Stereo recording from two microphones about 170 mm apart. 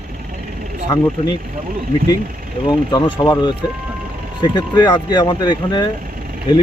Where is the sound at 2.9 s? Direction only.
25° left (ahead or behind).